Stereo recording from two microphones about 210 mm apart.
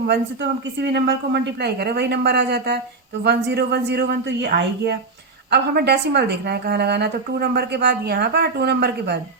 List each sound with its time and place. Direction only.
0.8 s a woman's voice: 55° right (ahead or behind)